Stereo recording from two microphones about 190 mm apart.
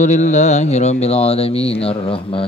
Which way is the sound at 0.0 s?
40° left (ahead or behind).